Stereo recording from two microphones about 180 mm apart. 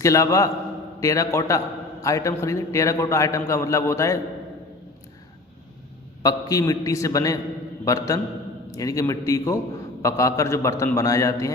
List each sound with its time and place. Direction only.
0.0 s a man's voice: 15° left (ahead or behind)
6.2 s a man's voice: 20° left (ahead or behind)